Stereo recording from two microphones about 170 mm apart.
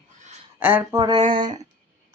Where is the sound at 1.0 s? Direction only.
25° right (ahead or behind).